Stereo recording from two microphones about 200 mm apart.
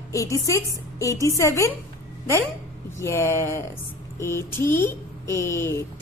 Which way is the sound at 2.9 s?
15° left (ahead or behind).